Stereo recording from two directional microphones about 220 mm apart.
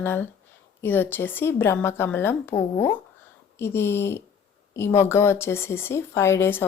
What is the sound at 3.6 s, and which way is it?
A woman's voice, 10° left (ahead or behind).